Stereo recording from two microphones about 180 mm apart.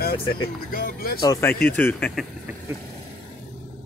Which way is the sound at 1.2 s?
20° left (ahead or behind).